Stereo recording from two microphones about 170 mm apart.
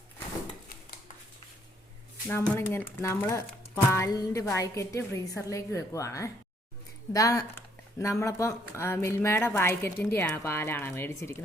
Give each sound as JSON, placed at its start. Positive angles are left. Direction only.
{"t": 2.2, "sound": "speech", "side_deg": 15}